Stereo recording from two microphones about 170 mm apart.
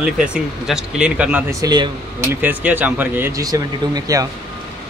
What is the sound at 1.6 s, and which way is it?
Speech, 25° right (ahead or behind).